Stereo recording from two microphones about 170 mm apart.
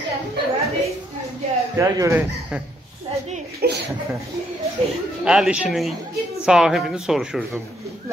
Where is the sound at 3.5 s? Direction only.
80° right.